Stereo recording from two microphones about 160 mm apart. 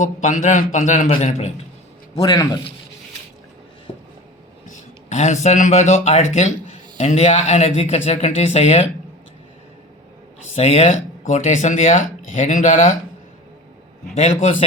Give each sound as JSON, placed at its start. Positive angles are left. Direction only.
{"t": 0.0, "sound": "speech", "side_deg": 55}
{"t": 2.1, "sound": "a man's voice", "side_deg": 25}
{"t": 4.6, "sound": "speech", "side_deg": 50}
{"t": 10.5, "sound": "speech", "side_deg": 40}
{"t": 14.2, "sound": "speech", "side_deg": 45}